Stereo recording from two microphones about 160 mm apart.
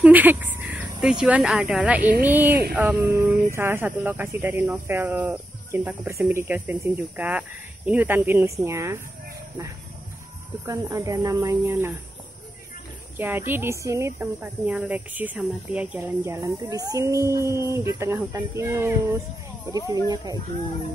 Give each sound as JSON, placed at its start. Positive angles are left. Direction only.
{"t": 0.0, "sound": "a woman's voice", "side_deg": -10}
{"t": 10.6, "sound": "speech", "side_deg": -20}
{"t": 13.2, "sound": "a woman's voice", "side_deg": -15}